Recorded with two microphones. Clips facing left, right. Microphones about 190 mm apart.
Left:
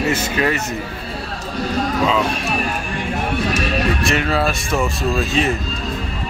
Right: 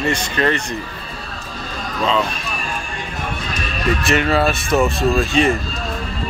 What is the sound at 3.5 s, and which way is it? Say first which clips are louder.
Music: left 7 dB; 75° left (ahead or behind).